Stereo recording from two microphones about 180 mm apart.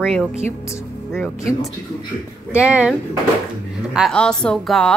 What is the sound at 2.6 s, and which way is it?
Speech, 5° right (ahead or behind).